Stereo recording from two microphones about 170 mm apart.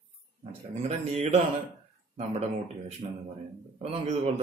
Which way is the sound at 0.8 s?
40° right (ahead or behind).